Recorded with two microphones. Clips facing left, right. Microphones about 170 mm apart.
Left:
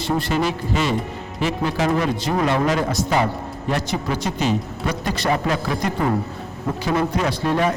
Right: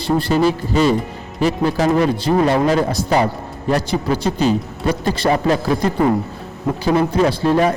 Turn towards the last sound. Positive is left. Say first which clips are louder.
# right 5 dB
turn(degrees=-35)  # may be behind; listen again after turning